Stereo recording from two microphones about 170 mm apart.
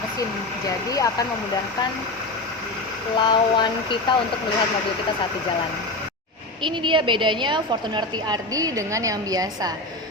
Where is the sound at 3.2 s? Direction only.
25° left (ahead or behind).